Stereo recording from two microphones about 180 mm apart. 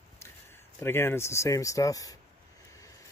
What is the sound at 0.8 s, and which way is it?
Speech, 10° left (ahead or behind).